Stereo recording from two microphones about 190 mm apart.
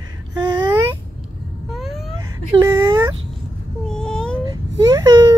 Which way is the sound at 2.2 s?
15° right (ahead or behind).